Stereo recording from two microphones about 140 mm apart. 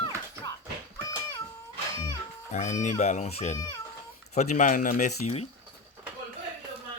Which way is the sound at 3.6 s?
30° left (ahead or behind).